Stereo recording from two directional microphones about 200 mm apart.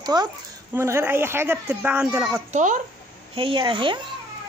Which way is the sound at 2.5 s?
35° right (ahead or behind).